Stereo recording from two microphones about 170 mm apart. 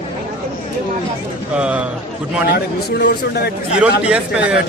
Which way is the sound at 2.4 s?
70° left (ahead or behind).